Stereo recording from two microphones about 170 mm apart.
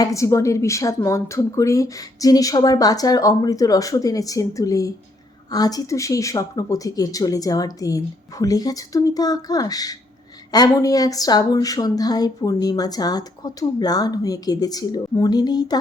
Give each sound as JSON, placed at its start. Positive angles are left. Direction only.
{"t": 0.0, "sound": "speech", "side_deg": 20}